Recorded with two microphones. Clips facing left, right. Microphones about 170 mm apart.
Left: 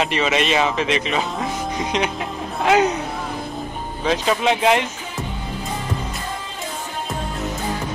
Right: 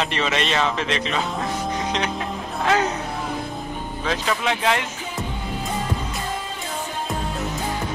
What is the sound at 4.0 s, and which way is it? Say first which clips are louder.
Speech: left 5 dB; 20° left (ahead or behind).